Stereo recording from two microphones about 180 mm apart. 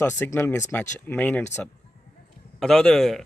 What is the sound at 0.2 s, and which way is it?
A man's voice, 15° left (ahead or behind).